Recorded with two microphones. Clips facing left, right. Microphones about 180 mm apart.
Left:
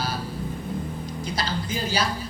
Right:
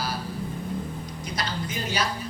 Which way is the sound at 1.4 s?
30° left (ahead or behind).